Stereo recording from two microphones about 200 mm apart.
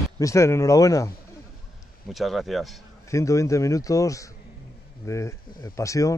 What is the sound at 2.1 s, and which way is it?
Speech, centre (ahead or behind).